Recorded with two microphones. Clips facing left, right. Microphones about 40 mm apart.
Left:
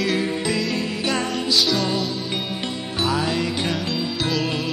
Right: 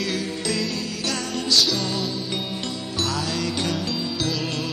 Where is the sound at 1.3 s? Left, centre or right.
Centre.